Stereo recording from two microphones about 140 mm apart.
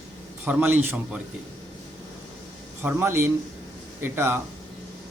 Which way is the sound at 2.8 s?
15° right (ahead or behind).